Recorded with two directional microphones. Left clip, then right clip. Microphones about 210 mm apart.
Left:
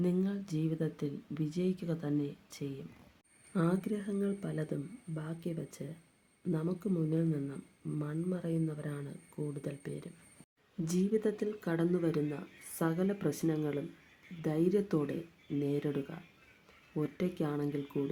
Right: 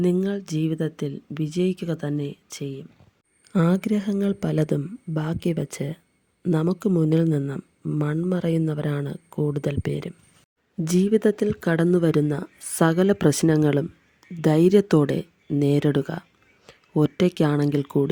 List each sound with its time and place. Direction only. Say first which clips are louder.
0.0 s speech: right 12 dB; 35° right (ahead or behind)
3.5 s speech: right 11 dB; 45° right (ahead or behind)